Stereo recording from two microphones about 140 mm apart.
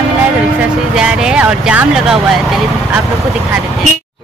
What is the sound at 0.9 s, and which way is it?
Speech, 5° right (ahead or behind).